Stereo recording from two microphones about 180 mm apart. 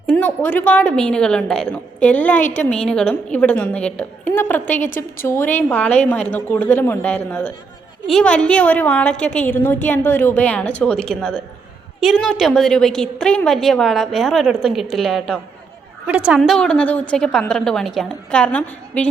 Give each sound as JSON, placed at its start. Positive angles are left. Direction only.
{"t": 0.1, "sound": "a woman's voice", "side_deg": 10}
{"t": 2.4, "sound": "a woman's voice", "side_deg": 45}
{"t": 2.8, "sound": "a woman's voice", "side_deg": 5}